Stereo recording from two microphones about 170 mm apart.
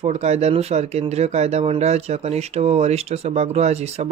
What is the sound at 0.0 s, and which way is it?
Speech, 40° right (ahead or behind).